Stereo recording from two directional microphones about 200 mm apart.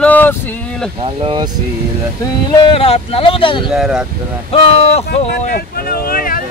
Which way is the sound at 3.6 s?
5° right (ahead or behind).